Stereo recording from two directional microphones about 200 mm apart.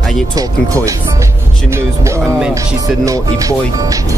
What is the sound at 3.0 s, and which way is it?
Speech, 15° right (ahead or behind).